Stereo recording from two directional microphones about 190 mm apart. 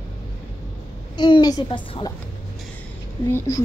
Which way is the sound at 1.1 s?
20° left (ahead or behind).